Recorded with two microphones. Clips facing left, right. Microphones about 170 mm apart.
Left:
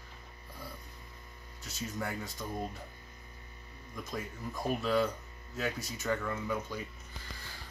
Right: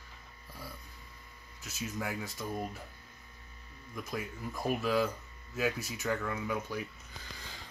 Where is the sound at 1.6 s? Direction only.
5° right (ahead or behind).